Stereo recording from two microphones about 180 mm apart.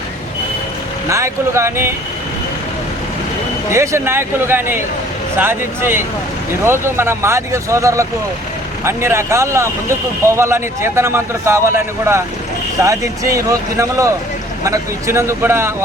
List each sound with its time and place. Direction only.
1.1 s speech: 15° right (ahead or behind)
3.7 s speech: 15° right (ahead or behind)